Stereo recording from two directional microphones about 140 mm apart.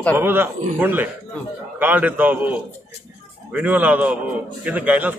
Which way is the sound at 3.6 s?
10° right (ahead or behind).